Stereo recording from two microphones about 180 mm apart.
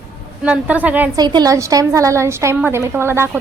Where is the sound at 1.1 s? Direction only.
25° right (ahead or behind).